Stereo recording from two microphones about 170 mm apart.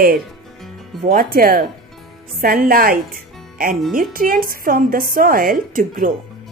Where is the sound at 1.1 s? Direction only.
60° right (ahead or behind).